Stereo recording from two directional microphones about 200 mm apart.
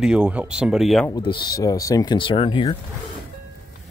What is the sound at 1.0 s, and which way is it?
Speech, 20° left (ahead or behind).